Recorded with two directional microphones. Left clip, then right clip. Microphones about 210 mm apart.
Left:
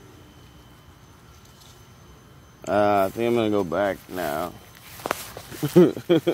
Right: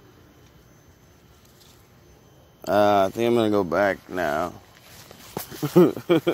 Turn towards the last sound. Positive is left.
turn(degrees=-15)  # may be behind; listen again after turning